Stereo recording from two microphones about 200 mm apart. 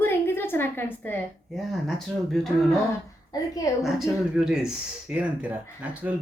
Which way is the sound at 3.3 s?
15° left (ahead or behind).